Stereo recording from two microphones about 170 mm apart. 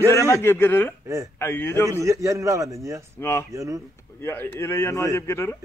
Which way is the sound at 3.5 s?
20° right (ahead or behind).